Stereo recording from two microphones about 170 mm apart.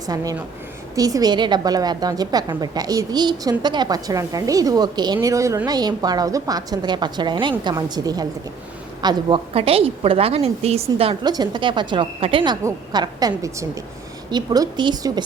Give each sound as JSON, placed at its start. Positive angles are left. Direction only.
{"t": 0.9, "sound": "a woman's voice", "side_deg": -20}